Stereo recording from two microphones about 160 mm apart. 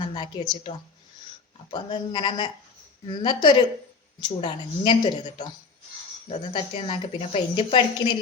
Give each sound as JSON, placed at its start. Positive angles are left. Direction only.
{"t": 0.0, "sound": "a woman's voice", "side_deg": 30}
{"t": 1.7, "sound": "a woman's voice", "side_deg": 30}